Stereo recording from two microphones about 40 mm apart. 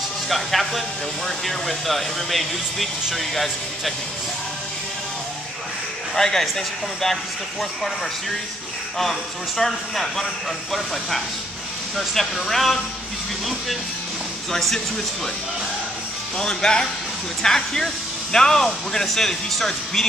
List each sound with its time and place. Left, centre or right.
0.3 s speech: centre
6.1 s speech: centre
9.6 s speech: centre
16.3 s speech: centre